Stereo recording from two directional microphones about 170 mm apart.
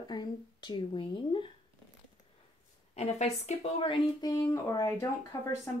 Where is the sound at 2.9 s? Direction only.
40° left (ahead or behind).